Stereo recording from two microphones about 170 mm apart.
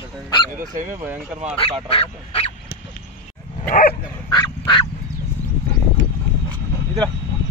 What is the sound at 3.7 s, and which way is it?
Dog, 60° left (ahead or behind).